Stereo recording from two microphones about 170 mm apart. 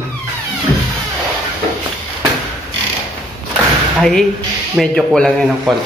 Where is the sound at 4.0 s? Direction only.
5° left (ahead or behind).